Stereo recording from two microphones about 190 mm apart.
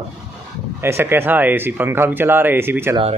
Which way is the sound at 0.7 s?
10° right (ahead or behind).